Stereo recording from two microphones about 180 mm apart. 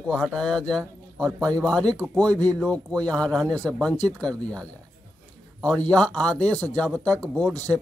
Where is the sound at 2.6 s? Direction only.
5° left (ahead or behind).